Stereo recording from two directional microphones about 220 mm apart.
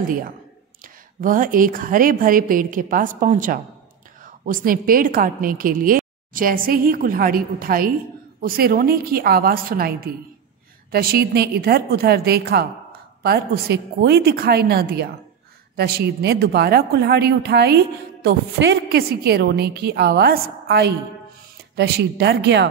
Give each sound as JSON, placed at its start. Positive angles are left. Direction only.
{"t": 0.8, "sound": "a woman's voice", "side_deg": -40}